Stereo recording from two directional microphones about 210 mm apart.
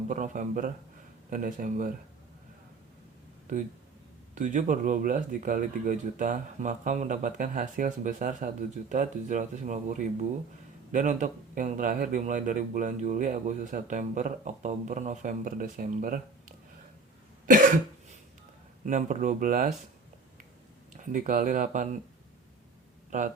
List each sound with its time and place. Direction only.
0.1 s speech: 40° right (ahead or behind)
4.4 s speech: 35° right (ahead or behind)
18.9 s speech: 35° right (ahead or behind)
20.9 s speech: 40° right (ahead or behind)
23.1 s speech: 35° right (ahead or behind)